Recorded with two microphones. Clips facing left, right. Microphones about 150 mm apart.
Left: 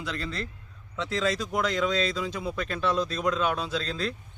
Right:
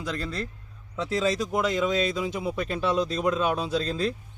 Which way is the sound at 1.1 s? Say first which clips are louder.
Right 2 dB; centre (ahead or behind).